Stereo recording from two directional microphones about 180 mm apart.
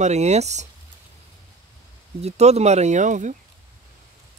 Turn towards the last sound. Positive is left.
turn(degrees=-45)  # may be behind; listen again after turning